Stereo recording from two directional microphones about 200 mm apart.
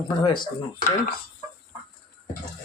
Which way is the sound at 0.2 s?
25° left (ahead or behind).